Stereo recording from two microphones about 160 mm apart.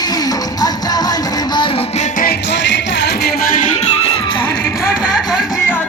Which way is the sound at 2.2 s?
80° left.